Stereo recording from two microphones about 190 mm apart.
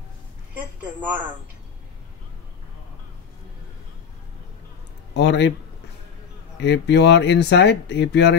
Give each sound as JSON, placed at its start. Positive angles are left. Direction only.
{"t": 5.1, "sound": "speech", "side_deg": 65}
{"t": 6.6, "sound": "speech", "side_deg": 65}